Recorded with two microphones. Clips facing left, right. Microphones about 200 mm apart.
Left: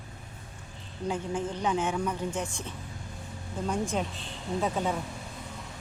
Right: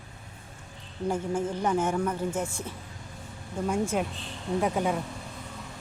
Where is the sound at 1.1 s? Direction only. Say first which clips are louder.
Right 3 dB; 10° right (ahead or behind).